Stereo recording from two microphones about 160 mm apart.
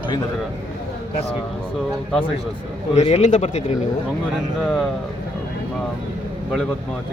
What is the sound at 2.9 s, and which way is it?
Speech, 45° left (ahead or behind).